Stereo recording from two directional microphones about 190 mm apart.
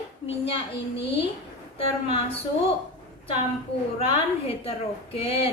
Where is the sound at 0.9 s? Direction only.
25° left (ahead or behind).